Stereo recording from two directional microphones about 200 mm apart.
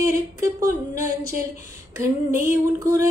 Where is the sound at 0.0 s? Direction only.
15° right (ahead or behind).